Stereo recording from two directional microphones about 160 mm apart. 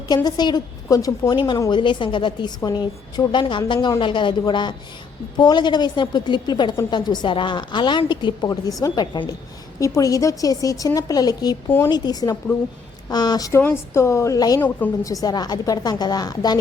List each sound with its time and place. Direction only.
0.1 s a woman's voice: 25° left (ahead or behind)